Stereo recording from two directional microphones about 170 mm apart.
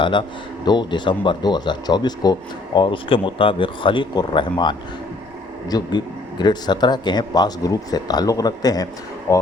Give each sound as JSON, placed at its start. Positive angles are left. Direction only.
{"t": 0.0, "sound": "speech", "side_deg": 30}